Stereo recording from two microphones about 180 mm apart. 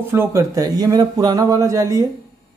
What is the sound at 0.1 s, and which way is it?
Speech, 15° right (ahead or behind).